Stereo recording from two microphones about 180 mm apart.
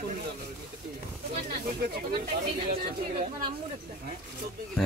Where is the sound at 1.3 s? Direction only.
60° right (ahead or behind).